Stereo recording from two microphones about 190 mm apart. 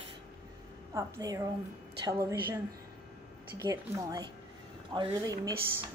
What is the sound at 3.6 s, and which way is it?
A woman's voice, 20° right (ahead or behind).